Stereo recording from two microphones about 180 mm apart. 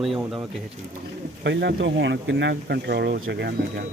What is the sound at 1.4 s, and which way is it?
Speech, 75° right (ahead or behind).